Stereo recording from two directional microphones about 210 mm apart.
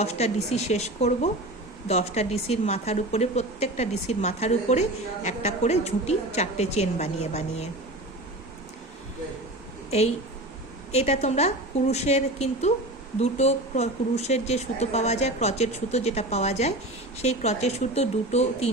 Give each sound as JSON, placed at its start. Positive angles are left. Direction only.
{"t": 0.0, "sound": "a woman's voice", "side_deg": 30}
{"t": 10.9, "sound": "a woman's voice", "side_deg": 30}